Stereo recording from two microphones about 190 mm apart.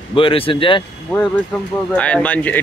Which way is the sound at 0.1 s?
30° left (ahead or behind).